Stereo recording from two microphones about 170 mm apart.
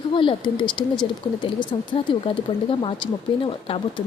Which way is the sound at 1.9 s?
30° left (ahead or behind).